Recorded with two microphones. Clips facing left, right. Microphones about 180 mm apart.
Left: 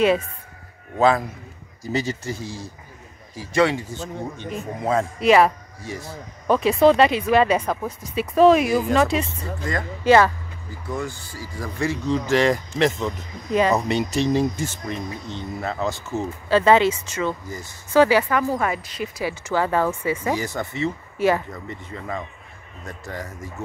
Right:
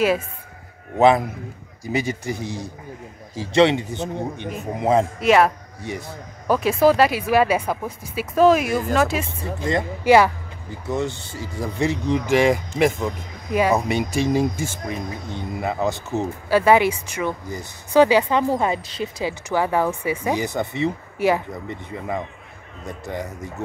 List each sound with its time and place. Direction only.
0.9 s speech: 20° right (ahead or behind)
5.2 s speech: centre (ahead or behind)
9.6 s speech: 25° right (ahead or behind)
10.0 s speech: 15° right (ahead or behind)
10.9 s speech: 25° right (ahead or behind)